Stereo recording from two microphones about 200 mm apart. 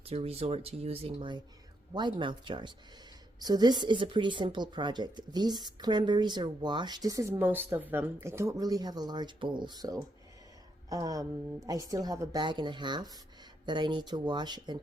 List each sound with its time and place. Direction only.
0.0 s a woman's voice: 30° right (ahead or behind)